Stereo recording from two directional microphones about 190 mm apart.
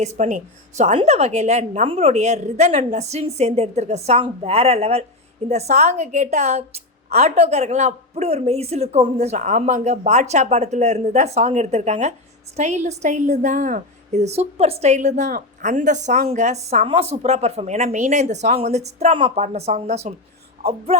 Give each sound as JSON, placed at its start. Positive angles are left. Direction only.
{"t": 0.0, "sound": "a woman's voice", "side_deg": -40}